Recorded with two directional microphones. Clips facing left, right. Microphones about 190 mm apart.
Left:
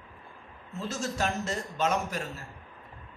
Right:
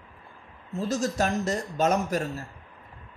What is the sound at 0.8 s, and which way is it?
A man's voice, 40° right (ahead or behind).